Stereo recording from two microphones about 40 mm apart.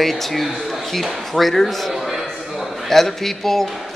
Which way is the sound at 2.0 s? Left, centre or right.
Centre.